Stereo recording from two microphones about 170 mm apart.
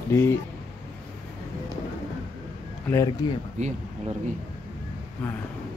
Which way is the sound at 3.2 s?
25° left (ahead or behind).